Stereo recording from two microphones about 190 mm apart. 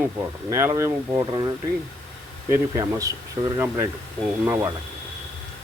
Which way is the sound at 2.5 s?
15° right (ahead or behind).